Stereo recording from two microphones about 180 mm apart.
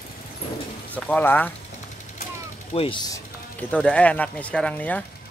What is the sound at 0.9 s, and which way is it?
Speech, 10° left (ahead or behind).